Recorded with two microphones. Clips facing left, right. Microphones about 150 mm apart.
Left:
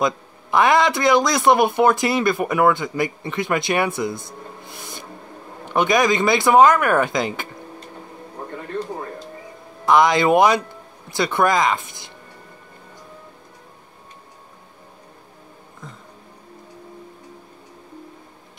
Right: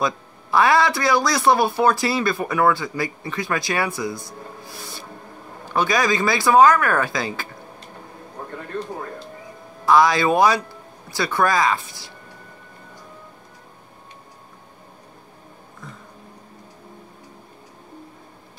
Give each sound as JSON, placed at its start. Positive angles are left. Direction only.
{"t": 0.0, "sound": "a man's voice", "side_deg": 20}
{"t": 4.6, "sound": "music", "side_deg": 20}
{"t": 5.7, "sound": "a man's voice", "side_deg": 20}
{"t": 9.8, "sound": "a man's voice", "side_deg": 20}